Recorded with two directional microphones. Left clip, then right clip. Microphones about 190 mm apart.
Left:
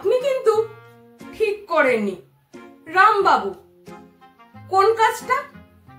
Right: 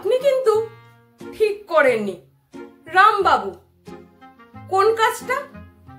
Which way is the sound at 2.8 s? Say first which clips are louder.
Right 1 dB; 15° right (ahead or behind).